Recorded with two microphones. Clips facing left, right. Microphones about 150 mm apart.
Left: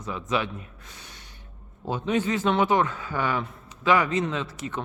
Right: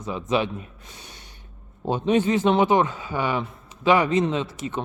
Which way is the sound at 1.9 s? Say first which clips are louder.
Right 5 dB; 25° right (ahead or behind).